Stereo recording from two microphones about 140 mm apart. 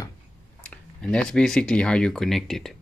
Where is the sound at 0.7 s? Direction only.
5° left (ahead or behind).